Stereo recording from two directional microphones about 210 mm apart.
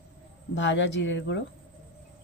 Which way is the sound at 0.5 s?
60° left (ahead or behind).